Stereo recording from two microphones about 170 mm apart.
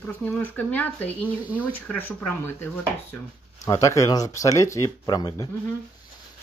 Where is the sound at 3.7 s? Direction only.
20° left (ahead or behind).